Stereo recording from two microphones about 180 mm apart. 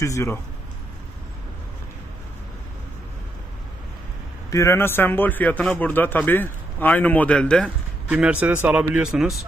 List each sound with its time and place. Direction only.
0.0 s a man's voice: 15° left (ahead or behind)
4.5 s a man's voice: 15° left (ahead or behind)
8.2 s speech: 10° right (ahead or behind)